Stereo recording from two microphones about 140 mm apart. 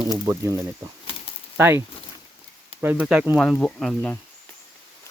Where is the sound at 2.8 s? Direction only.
10° right (ahead or behind).